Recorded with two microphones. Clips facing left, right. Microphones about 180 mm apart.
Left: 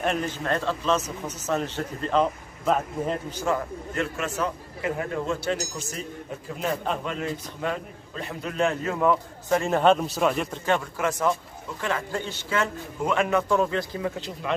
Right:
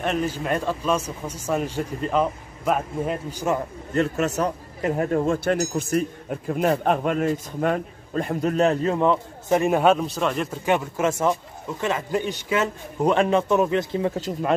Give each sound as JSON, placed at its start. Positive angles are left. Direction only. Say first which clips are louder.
{"t": 0.0, "sound": "a man's voice", "louder": "right 2 dB", "side_deg": 0}
{"t": 3.9, "sound": "a man's voice", "louder": "right 7 dB", "side_deg": -40}
{"t": 8.9, "sound": "a man's voice", "louder": "right 2 dB", "side_deg": -25}
{"t": 9.9, "sound": "a man's voice", "louder": "even", "side_deg": 0}
{"t": 10.6, "sound": "a man's voice", "louder": "right 4 dB", "side_deg": -20}
{"t": 13.0, "sound": "a man's voice", "louder": "right 4 dB", "side_deg": -30}